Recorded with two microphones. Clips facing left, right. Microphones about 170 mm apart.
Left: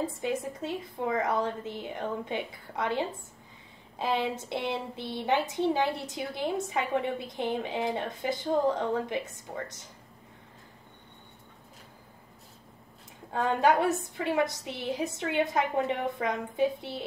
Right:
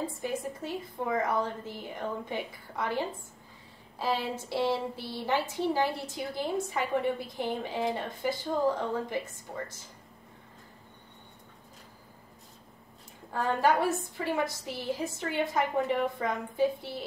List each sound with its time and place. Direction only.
0.2 s a woman's voice: 20° left (ahead or behind)
13.3 s a woman's voice: 20° left (ahead or behind)